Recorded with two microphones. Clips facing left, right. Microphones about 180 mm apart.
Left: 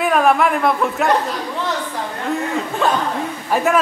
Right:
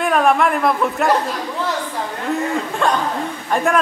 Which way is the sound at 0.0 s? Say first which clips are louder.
Even; centre (ahead or behind).